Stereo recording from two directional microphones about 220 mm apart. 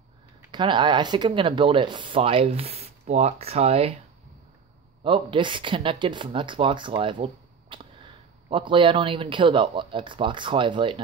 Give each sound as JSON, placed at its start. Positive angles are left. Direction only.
{"t": 0.5, "sound": "speech", "side_deg": -20}
{"t": 5.0, "sound": "speech", "side_deg": -20}
{"t": 7.7, "sound": "sniff", "side_deg": -25}
{"t": 8.5, "sound": "speech", "side_deg": -20}